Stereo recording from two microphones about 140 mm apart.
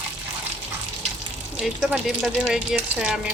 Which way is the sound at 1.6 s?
5° right (ahead or behind).